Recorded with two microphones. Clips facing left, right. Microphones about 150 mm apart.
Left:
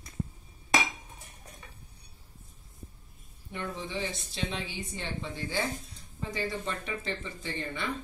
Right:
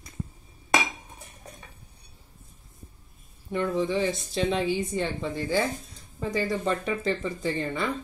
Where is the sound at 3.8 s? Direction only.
45° right (ahead or behind).